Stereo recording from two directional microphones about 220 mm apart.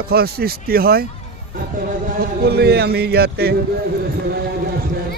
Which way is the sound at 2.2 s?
45° right (ahead or behind).